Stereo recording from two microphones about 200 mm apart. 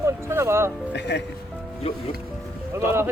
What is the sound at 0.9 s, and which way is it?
Speech, 60° left (ahead or behind).